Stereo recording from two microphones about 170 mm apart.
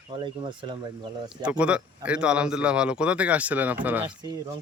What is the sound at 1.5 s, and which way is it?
Speech, 5° right (ahead or behind).